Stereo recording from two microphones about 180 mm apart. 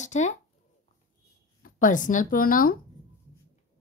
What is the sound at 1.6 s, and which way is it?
Speech, 45° left (ahead or behind).